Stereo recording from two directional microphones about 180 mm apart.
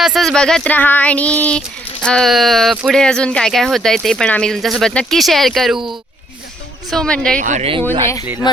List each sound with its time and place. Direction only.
0.0 s child singing: centre (ahead or behind)
6.9 s child singing: 5° left (ahead or behind)
7.3 s speech: 45° right (ahead or behind)
7.8 s speech: 10° left (ahead or behind)